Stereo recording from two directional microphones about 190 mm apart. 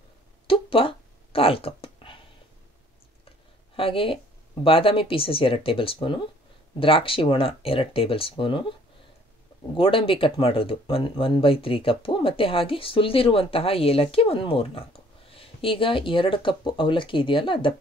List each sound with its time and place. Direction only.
0.5 s a sound: 30° left (ahead or behind)
3.7 s speech: 30° left (ahead or behind)
9.8 s speech: 25° left (ahead or behind)